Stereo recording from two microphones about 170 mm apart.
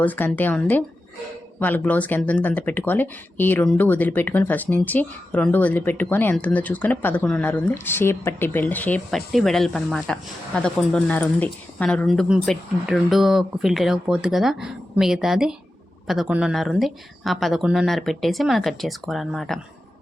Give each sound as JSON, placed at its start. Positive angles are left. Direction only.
{"t": 0.0, "sound": "speech", "side_deg": 10}